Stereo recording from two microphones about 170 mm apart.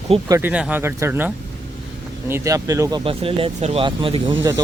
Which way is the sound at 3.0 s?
35° right (ahead or behind).